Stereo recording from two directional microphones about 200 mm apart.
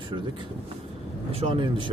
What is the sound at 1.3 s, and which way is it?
Speech, 30° right (ahead or behind).